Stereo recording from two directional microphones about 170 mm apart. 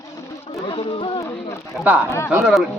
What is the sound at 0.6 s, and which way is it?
Speech, 30° left (ahead or behind).